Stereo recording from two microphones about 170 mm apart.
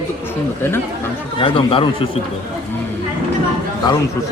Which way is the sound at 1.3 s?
30° left (ahead or behind).